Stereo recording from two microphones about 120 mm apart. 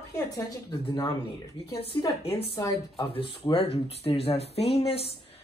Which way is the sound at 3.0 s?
50° left (ahead or behind).